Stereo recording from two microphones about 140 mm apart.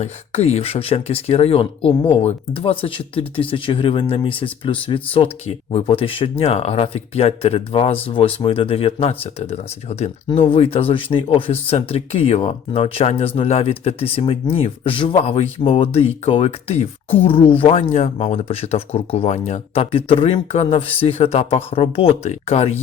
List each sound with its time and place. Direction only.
0.0 s speech: 50° left (ahead or behind)
17.9 s speech: 55° left (ahead or behind)